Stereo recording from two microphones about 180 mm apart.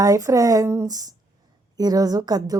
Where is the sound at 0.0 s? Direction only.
20° right (ahead or behind).